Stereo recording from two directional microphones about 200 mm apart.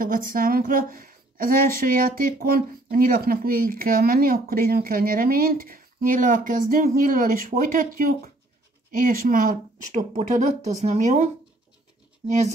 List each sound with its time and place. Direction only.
0.0 s a woman's voice: 45° right (ahead or behind)